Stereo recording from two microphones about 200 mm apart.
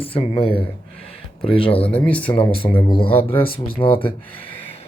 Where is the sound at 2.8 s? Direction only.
25° left (ahead or behind).